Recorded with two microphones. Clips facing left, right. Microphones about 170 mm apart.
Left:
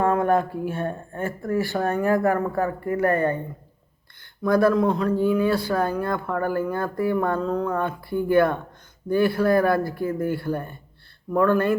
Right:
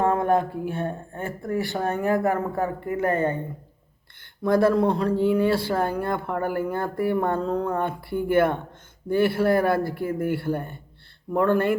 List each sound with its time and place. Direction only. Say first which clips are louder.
0.0 s speech: left 1 dB; 20° right (ahead or behind)
4.4 s speech: even; 25° right (ahead or behind)